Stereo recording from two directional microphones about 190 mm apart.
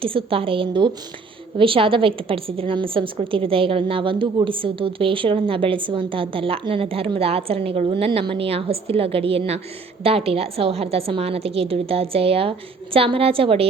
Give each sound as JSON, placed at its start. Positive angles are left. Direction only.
{"t": 0.0, "sound": "a woman's voice", "side_deg": -30}